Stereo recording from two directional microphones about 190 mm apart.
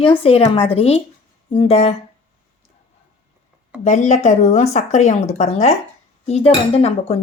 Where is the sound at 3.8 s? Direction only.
40° left (ahead or behind).